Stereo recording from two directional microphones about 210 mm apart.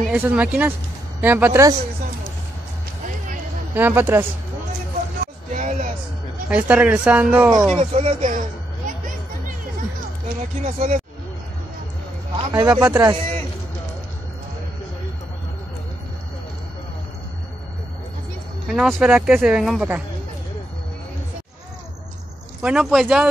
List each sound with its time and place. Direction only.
0.1 s speech: 5° right (ahead or behind)
3.7 s speech: 10° right (ahead or behind)
5.5 s a sound: 35° right (ahead or behind)
6.5 s speech: 5° right (ahead or behind)
7.7 s speech: 30° right (ahead or behind)
8.8 s music: 40° right (ahead or behind)
10.6 s speech: 35° right (ahead or behind)
12.4 s a sound: 15° right (ahead or behind)
12.7 s speech: 10° right (ahead or behind)
18.7 s speech: centre (ahead or behind)
22.6 s speech: 5° right (ahead or behind)